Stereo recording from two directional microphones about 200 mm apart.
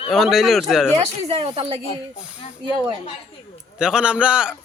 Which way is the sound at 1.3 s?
30° right (ahead or behind).